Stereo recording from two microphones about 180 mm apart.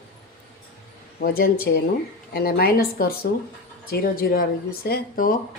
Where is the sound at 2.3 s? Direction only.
55° left (ahead or behind).